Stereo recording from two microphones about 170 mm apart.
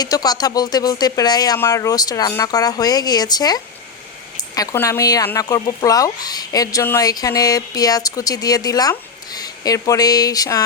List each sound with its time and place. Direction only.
0.0 s speech: 25° left (ahead or behind)